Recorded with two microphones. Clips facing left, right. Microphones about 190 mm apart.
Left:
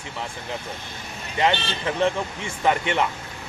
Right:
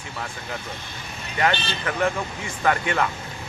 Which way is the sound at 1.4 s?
25° left (ahead or behind).